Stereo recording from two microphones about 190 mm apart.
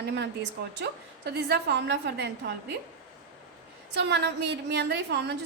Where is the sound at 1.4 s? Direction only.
60° right (ahead or behind).